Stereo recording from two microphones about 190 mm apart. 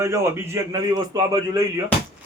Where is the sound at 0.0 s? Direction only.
15° right (ahead or behind).